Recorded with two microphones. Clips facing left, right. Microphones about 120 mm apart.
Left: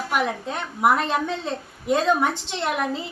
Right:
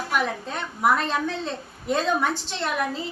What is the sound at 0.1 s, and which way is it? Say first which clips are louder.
A woman's voice: left 2 dB; 15° left (ahead or behind).